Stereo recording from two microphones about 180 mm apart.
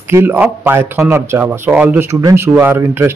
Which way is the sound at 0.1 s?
10° right (ahead or behind).